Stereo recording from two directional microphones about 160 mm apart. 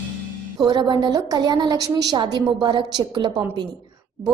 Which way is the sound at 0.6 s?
25° right (ahead or behind).